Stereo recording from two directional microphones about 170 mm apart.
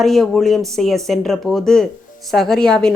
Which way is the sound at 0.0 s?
Centre (ahead or behind).